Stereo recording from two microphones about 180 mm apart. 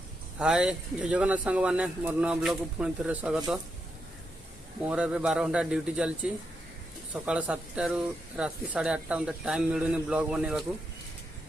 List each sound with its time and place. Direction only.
0.3 s speech: 5° right (ahead or behind)
4.8 s speech: 5° right (ahead or behind)